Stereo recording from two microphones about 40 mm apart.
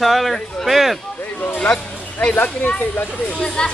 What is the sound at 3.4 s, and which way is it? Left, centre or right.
Speech, left.